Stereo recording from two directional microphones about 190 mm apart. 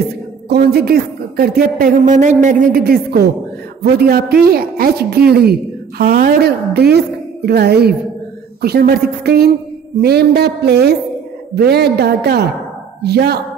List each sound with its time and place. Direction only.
0.5 s a woman's voice: 55° right (ahead or behind)